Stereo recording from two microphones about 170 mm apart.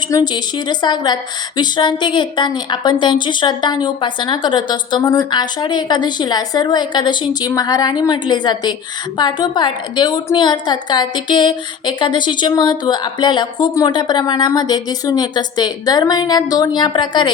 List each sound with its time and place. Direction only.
0.1 s a woman's voice: 20° left (ahead or behind)